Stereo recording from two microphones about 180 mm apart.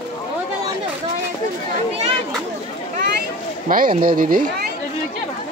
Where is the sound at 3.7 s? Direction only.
50° right (ahead or behind).